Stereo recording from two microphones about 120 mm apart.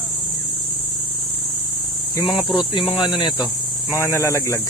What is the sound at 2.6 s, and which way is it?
Speech, 45° left (ahead or behind).